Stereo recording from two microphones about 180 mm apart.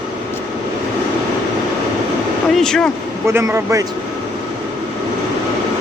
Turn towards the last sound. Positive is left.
turn(degrees=-20)  # may be behind; listen again after turning